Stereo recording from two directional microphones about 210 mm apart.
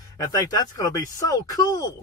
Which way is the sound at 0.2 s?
15° left (ahead or behind).